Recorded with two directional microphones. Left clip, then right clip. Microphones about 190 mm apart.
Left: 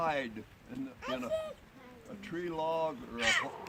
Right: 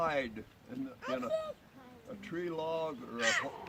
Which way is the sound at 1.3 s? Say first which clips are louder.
Even; 35° left (ahead or behind).